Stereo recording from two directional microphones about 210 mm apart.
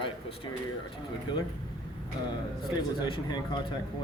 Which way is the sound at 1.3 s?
20° left (ahead or behind).